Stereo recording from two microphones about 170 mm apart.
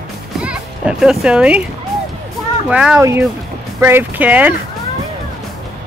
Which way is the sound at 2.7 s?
5° right (ahead or behind).